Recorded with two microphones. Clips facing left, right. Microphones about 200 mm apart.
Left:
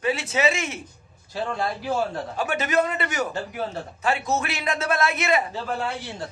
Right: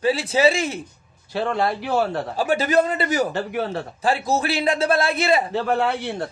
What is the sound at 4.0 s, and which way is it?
A man's voice, 35° right (ahead or behind).